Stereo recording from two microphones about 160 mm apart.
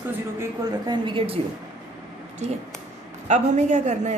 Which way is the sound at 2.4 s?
45° right (ahead or behind).